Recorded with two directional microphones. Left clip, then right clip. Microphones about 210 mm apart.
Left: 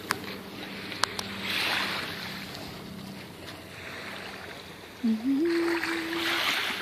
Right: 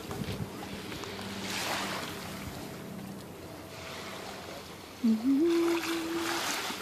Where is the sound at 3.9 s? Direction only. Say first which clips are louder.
Left 3 dB; 50° right (ahead or behind).